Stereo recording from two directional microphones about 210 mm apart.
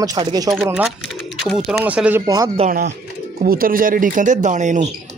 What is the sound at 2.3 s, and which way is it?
Speech, 20° right (ahead or behind).